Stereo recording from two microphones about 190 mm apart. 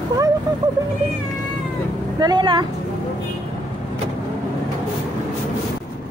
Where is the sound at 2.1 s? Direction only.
20° right (ahead or behind).